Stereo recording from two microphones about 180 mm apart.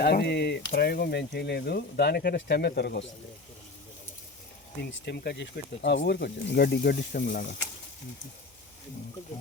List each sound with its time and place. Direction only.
0.0 s speech: 65° left (ahead or behind)
4.8 s speech: 70° left (ahead or behind); by 7.4 s 55° left (ahead or behind)